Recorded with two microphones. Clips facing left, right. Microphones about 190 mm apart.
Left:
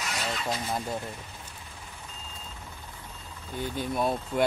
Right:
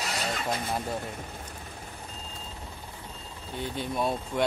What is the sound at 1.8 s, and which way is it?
Reversing beeps, 35° right (ahead or behind).